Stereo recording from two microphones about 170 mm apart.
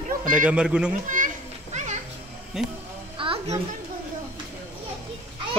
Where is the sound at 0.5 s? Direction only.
5° right (ahead or behind).